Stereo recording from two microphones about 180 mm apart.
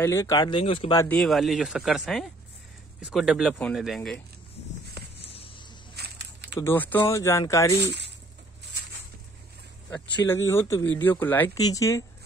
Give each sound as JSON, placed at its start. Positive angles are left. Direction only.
{"t": 0.0, "sound": "speech", "side_deg": 15}
{"t": 1.0, "sound": "speech", "side_deg": 5}
{"t": 5.9, "sound": "a sound", "side_deg": -70}
{"t": 6.5, "sound": "speech", "side_deg": 15}
{"t": 10.2, "sound": "speech", "side_deg": 15}